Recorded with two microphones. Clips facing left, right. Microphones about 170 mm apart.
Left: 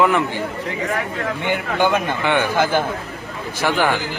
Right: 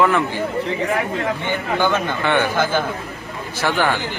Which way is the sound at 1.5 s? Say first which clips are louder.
Left 3 dB; 15° left (ahead or behind).